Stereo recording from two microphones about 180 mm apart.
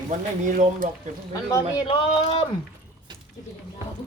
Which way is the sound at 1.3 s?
20° left (ahead or behind).